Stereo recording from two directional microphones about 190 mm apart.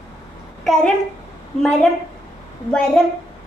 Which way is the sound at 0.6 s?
Centre (ahead or behind).